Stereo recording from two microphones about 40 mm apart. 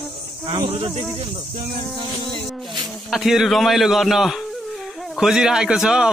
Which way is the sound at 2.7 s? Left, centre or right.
Centre.